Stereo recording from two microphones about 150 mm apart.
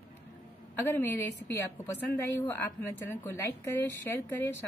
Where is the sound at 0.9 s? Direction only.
15° left (ahead or behind).